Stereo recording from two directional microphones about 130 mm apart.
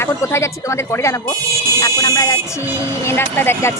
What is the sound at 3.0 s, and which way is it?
Speech, 20° left (ahead or behind).